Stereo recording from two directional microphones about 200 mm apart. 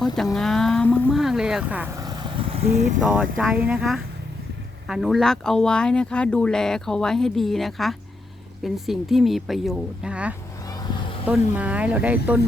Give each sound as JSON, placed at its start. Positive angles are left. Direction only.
{"t": 0.3, "sound": "speech", "side_deg": 0}
{"t": 2.0, "sound": "vehicle", "side_deg": -25}
{"t": 3.0, "sound": "speech", "side_deg": -5}
{"t": 10.7, "sound": "vehicle", "side_deg": 20}
{"t": 11.3, "sound": "speech", "side_deg": -5}